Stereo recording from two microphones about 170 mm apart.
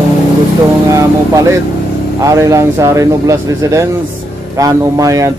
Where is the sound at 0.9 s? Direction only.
20° right (ahead or behind).